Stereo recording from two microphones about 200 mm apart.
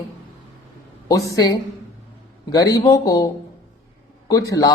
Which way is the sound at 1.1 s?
15° left (ahead or behind).